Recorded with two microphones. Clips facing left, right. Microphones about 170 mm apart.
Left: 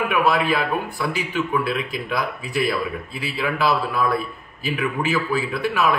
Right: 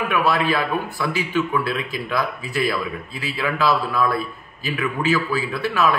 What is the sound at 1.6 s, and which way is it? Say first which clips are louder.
A man's voice: left 1 dB; 15° left (ahead or behind).